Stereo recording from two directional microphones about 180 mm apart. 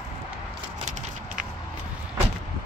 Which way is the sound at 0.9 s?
40° right (ahead or behind).